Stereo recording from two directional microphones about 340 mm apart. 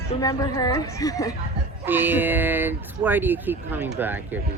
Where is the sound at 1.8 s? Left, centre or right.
Centre.